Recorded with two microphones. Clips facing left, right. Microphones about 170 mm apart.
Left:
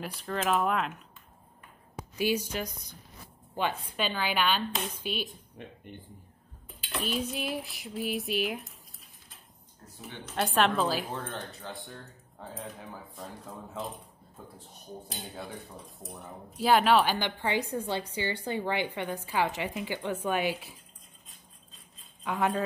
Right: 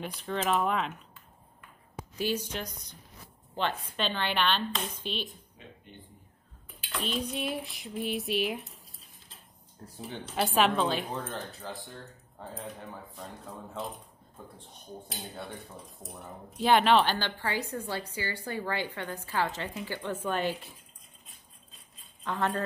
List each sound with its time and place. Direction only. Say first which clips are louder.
0.0 s speech: even; centre (ahead or behind)
2.1 s a woman's voice: left 3 dB; 10° left (ahead or behind)
5.6 s speech: left 6 dB; 60° left (ahead or behind)
7.0 s speech: even; 5° left (ahead or behind)
9.9 s a woman's voice: right 4 dB; 35° right (ahead or behind)
10.3 s speech: even; centre (ahead or behind)
15.0 s a woman's voice: even; centre (ahead or behind)
22.2 s speech: left 2 dB; 10° left (ahead or behind)